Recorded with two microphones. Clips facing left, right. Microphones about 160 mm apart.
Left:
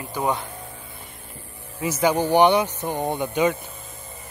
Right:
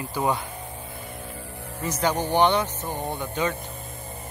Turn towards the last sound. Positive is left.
turn(degrees=15)  # may be behind; listen again after turning